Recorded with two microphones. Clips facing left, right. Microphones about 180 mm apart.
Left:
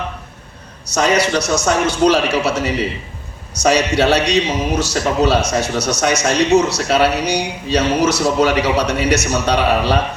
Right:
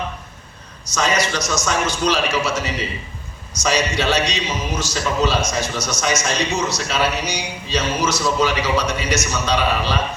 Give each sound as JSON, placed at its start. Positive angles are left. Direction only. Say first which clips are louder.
{"t": 0.9, "sound": "a man's voice", "louder": "left 5 dB", "side_deg": 65}